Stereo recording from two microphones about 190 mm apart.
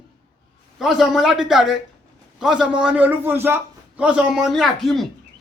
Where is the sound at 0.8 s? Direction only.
Centre (ahead or behind).